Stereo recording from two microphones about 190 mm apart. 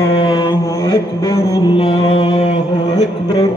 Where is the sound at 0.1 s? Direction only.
25° left (ahead or behind).